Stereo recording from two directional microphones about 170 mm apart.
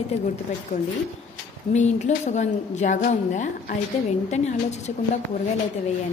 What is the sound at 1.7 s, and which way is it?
A woman's voice, 45° left (ahead or behind).